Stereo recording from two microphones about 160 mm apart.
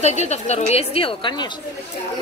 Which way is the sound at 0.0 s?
45° left (ahead or behind).